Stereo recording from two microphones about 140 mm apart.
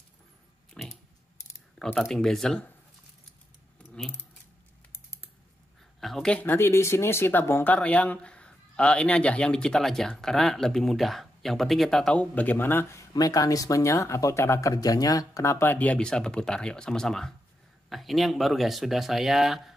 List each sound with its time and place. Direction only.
0.8 s pig: 5° left (ahead or behind)
2.0 s speech: centre (ahead or behind)
5.9 s speech: centre (ahead or behind)
13.1 s speech: 25° left (ahead or behind); by 19.7 s centre (ahead or behind)